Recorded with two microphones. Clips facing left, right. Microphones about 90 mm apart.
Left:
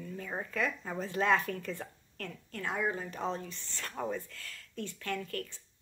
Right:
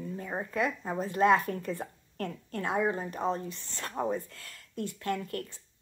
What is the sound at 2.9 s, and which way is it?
Speech, 40° right (ahead or behind).